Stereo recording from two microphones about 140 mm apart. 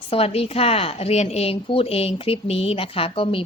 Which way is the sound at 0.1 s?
45° left (ahead or behind).